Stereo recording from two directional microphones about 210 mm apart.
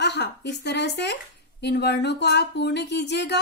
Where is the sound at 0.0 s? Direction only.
55° left (ahead or behind).